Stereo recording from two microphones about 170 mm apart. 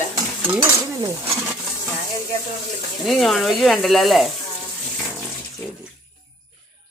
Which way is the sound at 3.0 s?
Centre (ahead or behind).